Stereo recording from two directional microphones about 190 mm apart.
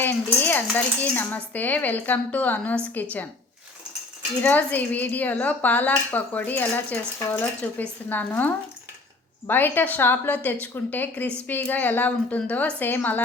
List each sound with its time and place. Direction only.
0.0 s speech: 10° left (ahead or behind)
4.4 s speech: 10° left (ahead or behind)